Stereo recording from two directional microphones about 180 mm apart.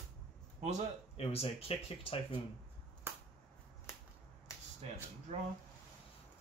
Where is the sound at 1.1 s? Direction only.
35° left (ahead or behind).